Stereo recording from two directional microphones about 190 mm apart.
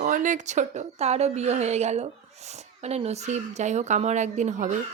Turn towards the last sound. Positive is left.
turn(degrees=-40)  # may be behind; listen again after turning